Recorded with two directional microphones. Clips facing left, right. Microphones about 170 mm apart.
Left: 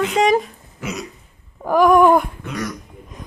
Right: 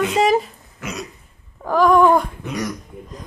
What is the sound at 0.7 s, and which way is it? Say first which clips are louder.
Hiccup: left 2 dB; 10° left (ahead or behind).